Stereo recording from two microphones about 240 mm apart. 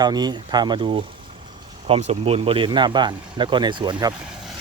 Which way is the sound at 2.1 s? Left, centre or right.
Right.